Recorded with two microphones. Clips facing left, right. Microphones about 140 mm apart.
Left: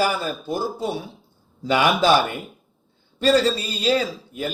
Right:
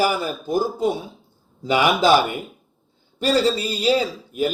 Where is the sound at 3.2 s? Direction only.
10° right (ahead or behind).